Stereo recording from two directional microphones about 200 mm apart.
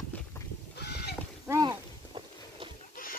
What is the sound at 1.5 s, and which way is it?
Walk, 20° right (ahead or behind).